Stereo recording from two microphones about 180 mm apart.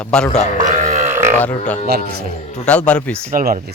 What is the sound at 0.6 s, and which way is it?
Grunt, 45° right (ahead or behind).